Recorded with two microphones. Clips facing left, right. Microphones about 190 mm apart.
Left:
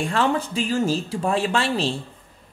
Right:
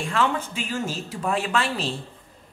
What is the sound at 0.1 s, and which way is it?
Speech, 35° left (ahead or behind).